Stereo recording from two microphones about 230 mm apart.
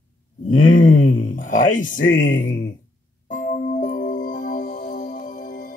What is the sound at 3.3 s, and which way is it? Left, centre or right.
Music, left.